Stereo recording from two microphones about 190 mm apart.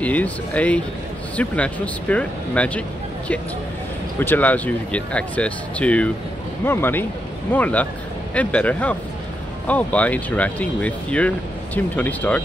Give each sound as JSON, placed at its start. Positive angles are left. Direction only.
{"t": 0.0, "sound": "speech", "side_deg": 5}
{"t": 4.2, "sound": "speech", "side_deg": 10}